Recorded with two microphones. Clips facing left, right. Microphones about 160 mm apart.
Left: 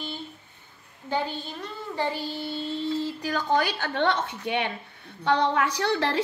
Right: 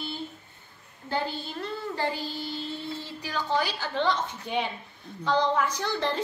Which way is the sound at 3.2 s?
50° left (ahead or behind).